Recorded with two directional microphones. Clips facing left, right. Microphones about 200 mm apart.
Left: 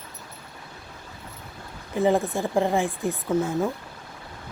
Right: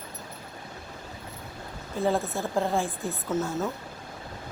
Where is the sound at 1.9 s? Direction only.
15° left (ahead or behind).